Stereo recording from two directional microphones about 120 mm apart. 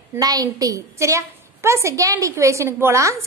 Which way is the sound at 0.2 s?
30° right (ahead or behind).